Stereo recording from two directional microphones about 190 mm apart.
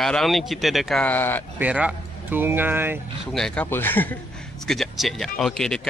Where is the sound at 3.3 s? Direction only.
Centre (ahead or behind).